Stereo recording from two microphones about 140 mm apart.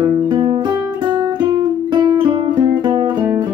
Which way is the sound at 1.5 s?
30° right (ahead or behind).